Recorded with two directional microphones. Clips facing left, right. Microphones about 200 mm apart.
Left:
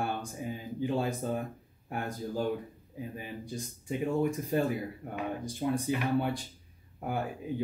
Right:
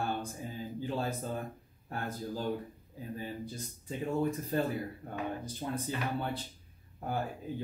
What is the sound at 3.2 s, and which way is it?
Speech, 15° left (ahead or behind).